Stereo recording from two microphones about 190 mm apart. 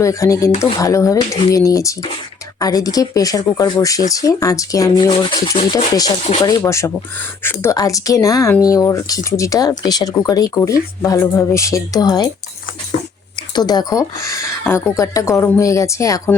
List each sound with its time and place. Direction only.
0.0 s speech: 15° left (ahead or behind)
13.6 s speech: 20° left (ahead or behind)